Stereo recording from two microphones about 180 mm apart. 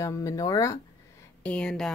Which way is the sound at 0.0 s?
15° left (ahead or behind).